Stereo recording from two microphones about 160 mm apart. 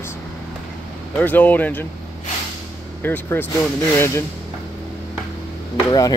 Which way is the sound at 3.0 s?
10° left (ahead or behind).